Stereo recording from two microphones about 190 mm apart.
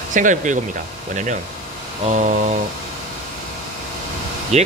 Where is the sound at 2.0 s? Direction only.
40° right (ahead or behind).